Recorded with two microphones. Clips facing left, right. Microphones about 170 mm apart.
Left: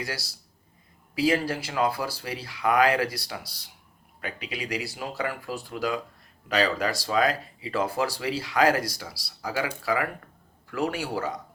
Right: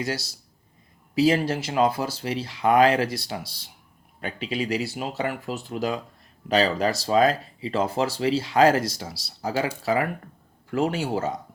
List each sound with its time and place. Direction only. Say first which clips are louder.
0.0 s speech: right 6 dB; 25° right (ahead or behind)